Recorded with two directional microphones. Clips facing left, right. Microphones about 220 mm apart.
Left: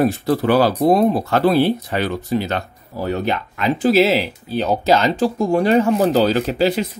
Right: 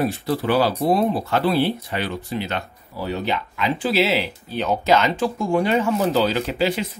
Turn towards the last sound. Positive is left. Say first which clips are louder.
# left 4 dB
turn(degrees=40)  # may be behind; listen again after turning